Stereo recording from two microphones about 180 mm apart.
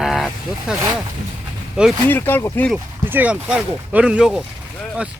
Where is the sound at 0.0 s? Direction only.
Centre (ahead or behind).